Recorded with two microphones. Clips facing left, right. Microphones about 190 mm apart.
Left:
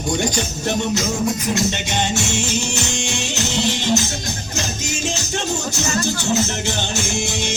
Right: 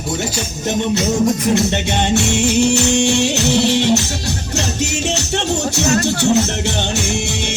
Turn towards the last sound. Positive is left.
turn(degrees=-65)  # may be behind; listen again after turning